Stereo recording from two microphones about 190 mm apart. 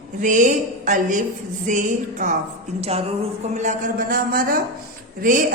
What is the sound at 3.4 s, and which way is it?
A man's voice, 40° right (ahead or behind).